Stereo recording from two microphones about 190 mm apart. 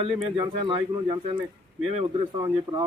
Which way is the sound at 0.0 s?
25° right (ahead or behind).